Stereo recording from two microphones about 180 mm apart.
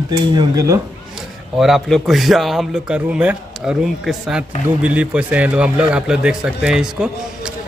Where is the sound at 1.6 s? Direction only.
Centre (ahead or behind).